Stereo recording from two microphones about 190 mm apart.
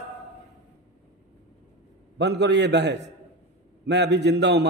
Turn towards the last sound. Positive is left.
turn(degrees=-65)  # may be behind; listen again after turning